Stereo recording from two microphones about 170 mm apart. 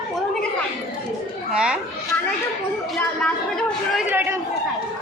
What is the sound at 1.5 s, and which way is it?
Speech, 5° right (ahead or behind).